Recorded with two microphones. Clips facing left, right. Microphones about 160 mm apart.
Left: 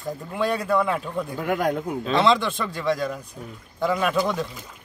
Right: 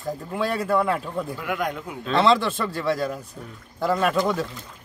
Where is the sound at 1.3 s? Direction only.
40° left (ahead or behind).